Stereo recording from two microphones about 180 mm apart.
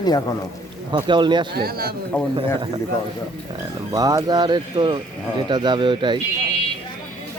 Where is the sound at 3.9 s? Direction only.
20° right (ahead or behind).